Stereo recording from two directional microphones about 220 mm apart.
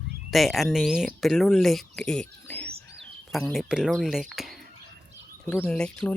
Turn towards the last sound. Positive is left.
turn(degrees=5)  # may be behind; listen again after turning